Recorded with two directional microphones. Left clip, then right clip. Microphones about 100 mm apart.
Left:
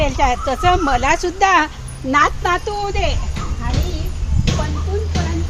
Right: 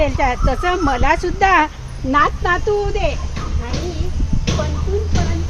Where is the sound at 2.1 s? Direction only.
5° right (ahead or behind).